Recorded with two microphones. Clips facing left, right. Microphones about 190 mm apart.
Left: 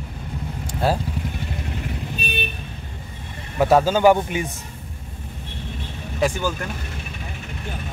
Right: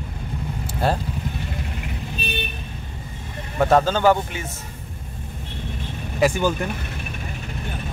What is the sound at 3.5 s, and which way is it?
Speech, 5° left (ahead or behind).